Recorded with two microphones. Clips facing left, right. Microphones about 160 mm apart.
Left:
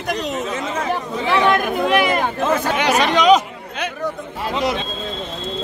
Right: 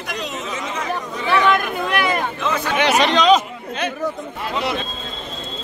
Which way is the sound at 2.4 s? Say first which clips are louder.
Left 4 dB; 45° left (ahead or behind).